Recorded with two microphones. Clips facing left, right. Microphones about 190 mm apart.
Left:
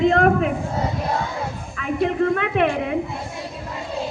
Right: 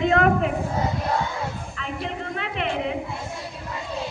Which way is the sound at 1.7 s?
55° left (ahead or behind).